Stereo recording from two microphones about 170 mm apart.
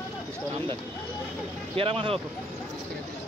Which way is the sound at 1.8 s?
35° right (ahead or behind).